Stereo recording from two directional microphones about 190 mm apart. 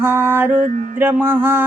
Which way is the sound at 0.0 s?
10° right (ahead or behind).